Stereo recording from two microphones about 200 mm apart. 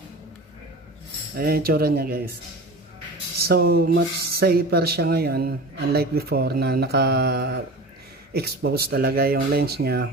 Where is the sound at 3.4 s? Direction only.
50° right (ahead or behind).